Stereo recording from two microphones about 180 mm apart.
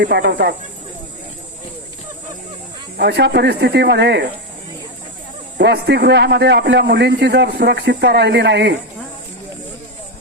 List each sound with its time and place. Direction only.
0.0 s a man's voice: 70° right (ahead or behind)
3.0 s a man's voice: 70° right (ahead or behind)
5.5 s a man's voice: 70° right (ahead or behind)